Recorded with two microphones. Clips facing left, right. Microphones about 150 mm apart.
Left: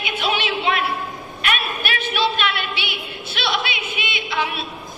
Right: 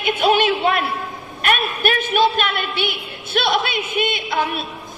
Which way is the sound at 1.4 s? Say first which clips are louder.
Right 6 dB; 50° right (ahead or behind).